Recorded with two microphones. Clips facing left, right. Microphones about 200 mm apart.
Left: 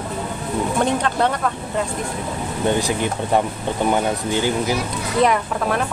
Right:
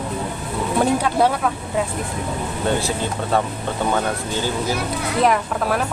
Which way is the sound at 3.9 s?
15° left (ahead or behind).